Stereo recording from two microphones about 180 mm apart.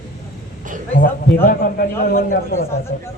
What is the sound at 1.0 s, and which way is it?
A man's voice, 50° left (ahead or behind).